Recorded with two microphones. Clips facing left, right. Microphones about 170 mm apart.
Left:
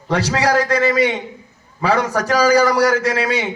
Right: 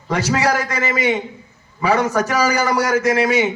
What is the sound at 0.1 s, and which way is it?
A man's voice, 35° left (ahead or behind).